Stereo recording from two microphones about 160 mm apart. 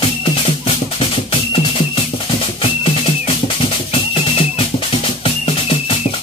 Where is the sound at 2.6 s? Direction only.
35° left (ahead or behind).